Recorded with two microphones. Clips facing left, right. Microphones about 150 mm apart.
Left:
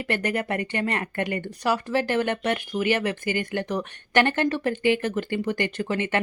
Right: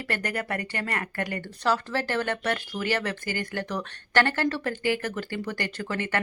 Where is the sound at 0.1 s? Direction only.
20° left (ahead or behind).